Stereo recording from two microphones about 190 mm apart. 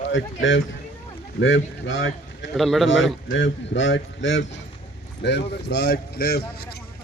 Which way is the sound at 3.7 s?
70° left (ahead or behind).